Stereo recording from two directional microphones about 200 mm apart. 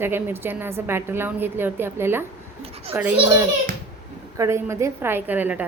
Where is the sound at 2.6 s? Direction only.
30° right (ahead or behind).